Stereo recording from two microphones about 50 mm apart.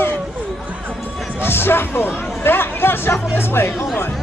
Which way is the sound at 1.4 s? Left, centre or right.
Left.